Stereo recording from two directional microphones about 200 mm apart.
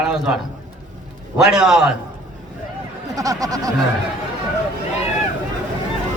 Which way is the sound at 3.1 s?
15° right (ahead or behind).